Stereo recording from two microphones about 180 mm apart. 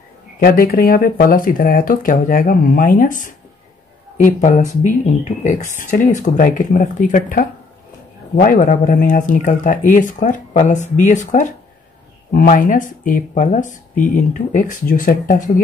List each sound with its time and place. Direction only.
0.4 s speech: 55° left (ahead or behind)